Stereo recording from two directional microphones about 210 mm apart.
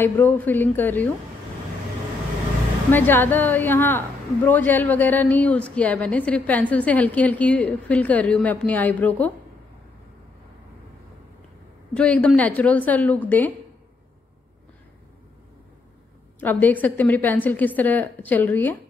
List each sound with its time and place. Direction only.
0.0 s a woman's voice: 10° left (ahead or behind)
2.9 s a woman's voice: 10° left (ahead or behind)
11.9 s a woman's voice: 5° left (ahead or behind)
16.3 s a woman's voice: 10° left (ahead or behind)